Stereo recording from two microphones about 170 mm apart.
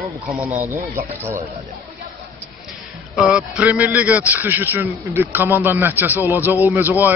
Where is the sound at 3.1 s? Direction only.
5° right (ahead or behind).